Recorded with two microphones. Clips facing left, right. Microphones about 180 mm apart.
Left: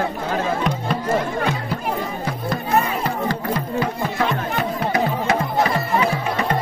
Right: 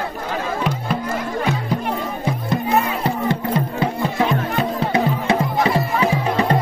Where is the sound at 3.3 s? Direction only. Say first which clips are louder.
Right 2 dB; 25° right (ahead or behind).